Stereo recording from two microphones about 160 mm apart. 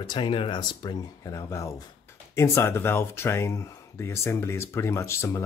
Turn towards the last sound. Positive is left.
turn(degrees=15)  # may be behind; listen again after turning